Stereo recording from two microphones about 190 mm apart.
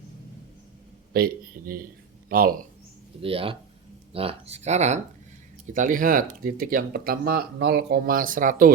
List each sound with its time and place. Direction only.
1.1 s speech: 50° right (ahead or behind)
3.2 s speech: 30° right (ahead or behind); by 8.7 s 45° right (ahead or behind)